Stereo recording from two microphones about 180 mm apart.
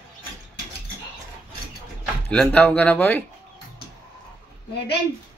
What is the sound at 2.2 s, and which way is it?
Chicken, 5° left (ahead or behind).